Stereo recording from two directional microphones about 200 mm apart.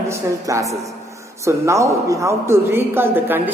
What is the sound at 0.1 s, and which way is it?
A woman's voice, 15° right (ahead or behind).